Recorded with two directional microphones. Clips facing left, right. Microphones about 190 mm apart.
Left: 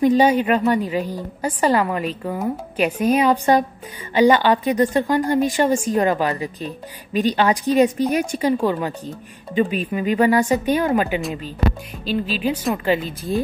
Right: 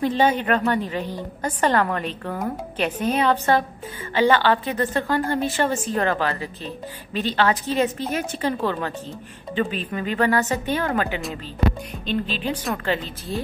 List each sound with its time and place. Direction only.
0.0 s a woman's voice: 10° left (ahead or behind)